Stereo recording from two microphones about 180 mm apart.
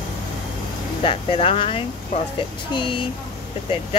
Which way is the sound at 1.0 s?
30° left (ahead or behind).